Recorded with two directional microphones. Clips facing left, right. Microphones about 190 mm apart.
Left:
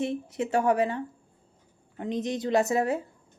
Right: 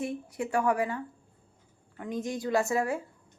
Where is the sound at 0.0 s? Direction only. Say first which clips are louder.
Left 4 dB; 25° left (ahead or behind).